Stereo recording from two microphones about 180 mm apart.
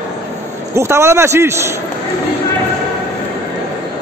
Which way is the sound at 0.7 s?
15° right (ahead or behind).